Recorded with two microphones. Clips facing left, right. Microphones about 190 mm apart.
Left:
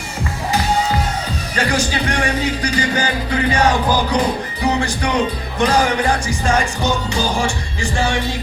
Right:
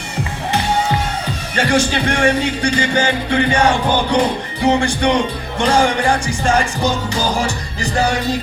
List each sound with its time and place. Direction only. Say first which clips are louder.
1.5 s music: right 4 dB; 30° right (ahead or behind)